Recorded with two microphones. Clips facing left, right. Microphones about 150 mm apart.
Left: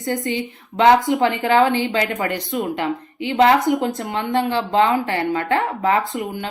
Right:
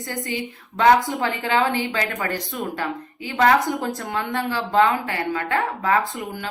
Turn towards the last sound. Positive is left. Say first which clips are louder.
# left 2 dB
turn(degrees=25)  # may be behind; listen again after turning